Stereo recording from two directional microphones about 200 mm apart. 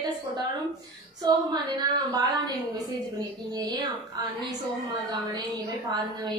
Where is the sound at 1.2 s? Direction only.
20° right (ahead or behind).